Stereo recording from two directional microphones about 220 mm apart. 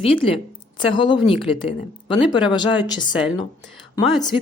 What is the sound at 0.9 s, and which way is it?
A woman's voice, 20° left (ahead or behind).